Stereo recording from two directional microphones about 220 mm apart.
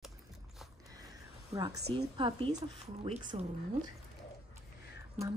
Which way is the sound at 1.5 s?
15° right (ahead or behind).